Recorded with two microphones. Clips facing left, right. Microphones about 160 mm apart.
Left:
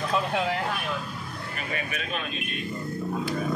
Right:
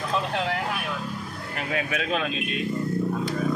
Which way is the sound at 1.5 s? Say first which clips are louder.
Right 6 dB; 90° right.